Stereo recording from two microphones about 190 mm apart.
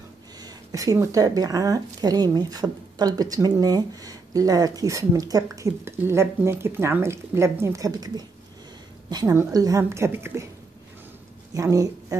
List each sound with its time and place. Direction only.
0.4 s a woman's voice: 20° right (ahead or behind)
11.5 s a woman's voice: 15° right (ahead or behind)